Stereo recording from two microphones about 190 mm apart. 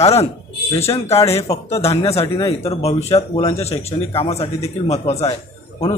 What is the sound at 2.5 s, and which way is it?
A man's voice, 35° left (ahead or behind).